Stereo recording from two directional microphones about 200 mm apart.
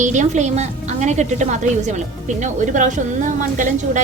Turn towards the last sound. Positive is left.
turn(degrees=-40)  # may be behind; listen again after turning